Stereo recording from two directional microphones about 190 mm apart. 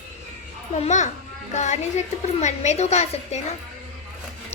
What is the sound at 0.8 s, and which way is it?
A woman's voice, 40° left (ahead or behind).